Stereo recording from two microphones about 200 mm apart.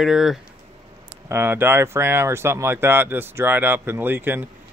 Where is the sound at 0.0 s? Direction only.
Centre (ahead or behind).